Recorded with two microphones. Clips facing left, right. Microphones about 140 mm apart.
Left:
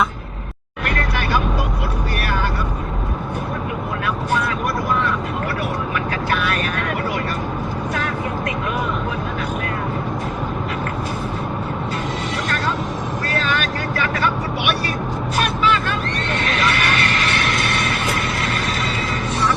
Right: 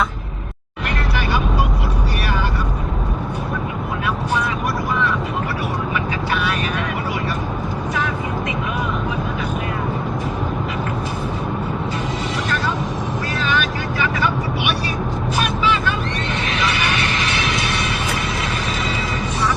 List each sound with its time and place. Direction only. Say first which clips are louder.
0.9 s vehicle: left 1 dB; 50° left (ahead or behind)
5.9 s vehicle: even; 55° left (ahead or behind)
13.4 s vehicle: right 4 dB; 45° left (ahead or behind)
15.4 s vehicle: left 1 dB; 55° left (ahead or behind)